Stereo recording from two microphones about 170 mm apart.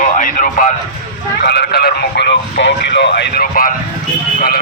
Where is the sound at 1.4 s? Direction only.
75° left (ahead or behind); by 3.7 s 60° left (ahead or behind).